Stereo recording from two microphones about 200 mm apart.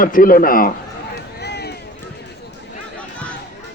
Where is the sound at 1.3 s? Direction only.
55° left (ahead or behind).